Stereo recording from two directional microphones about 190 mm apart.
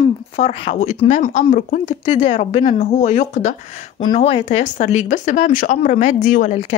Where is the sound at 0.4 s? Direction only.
30° left (ahead or behind).